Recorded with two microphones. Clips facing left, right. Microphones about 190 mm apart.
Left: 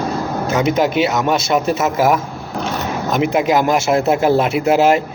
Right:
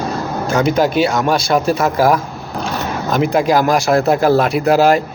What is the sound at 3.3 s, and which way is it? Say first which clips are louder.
Speech: right 2 dB; 20° left (ahead or behind).